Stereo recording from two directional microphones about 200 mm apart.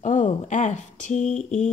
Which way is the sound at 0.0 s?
40° left (ahead or behind).